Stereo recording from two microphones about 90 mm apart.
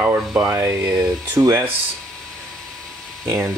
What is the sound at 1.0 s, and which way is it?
Speech, 40° right (ahead or behind).